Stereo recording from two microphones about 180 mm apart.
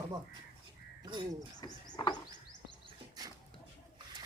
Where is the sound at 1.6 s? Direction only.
25° left (ahead or behind).